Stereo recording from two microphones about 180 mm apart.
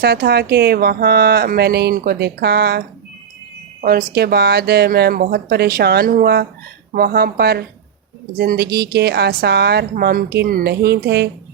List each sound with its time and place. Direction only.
0.0 s a woman's voice: 60° right (ahead or behind)
3.8 s a woman's voice: 50° right (ahead or behind); by 11.3 s 70° right (ahead or behind)